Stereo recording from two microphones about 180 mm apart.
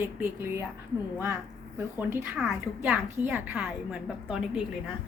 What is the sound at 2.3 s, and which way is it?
A woman's voice, 5° right (ahead or behind).